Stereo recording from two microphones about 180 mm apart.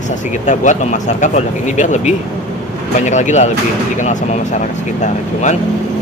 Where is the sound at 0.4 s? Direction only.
40° left (ahead or behind).